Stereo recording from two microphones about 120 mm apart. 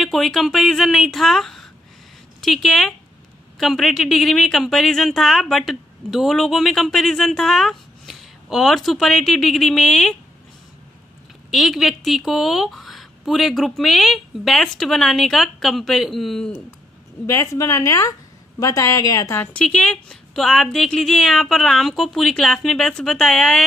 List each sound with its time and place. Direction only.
0.0 s a woman's voice: centre (ahead or behind)
11.5 s a woman's voice: centre (ahead or behind)
17.3 s a woman's voice: 25° left (ahead or behind)
19.6 s a woman's voice: 5° left (ahead or behind)